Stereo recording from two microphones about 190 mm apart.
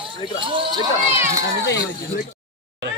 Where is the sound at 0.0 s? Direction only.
25° right (ahead or behind).